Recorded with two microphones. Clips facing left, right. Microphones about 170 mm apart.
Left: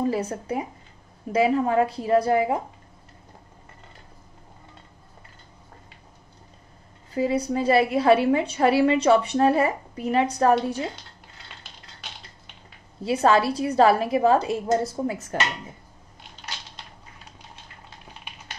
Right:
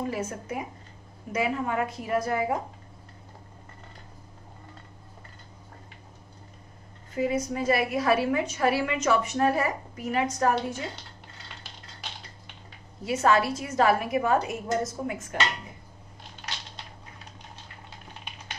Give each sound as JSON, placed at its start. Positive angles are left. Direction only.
{"t": 0.0, "sound": "a woman's voice", "side_deg": 35}
{"t": 7.2, "sound": "a woman's voice", "side_deg": 30}
{"t": 13.0, "sound": "a woman's voice", "side_deg": 30}